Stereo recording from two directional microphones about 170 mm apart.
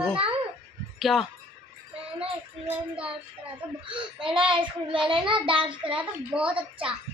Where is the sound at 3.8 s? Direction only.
30° right (ahead or behind).